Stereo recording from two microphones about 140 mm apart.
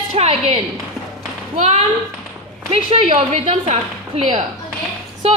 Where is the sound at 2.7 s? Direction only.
50° right (ahead or behind).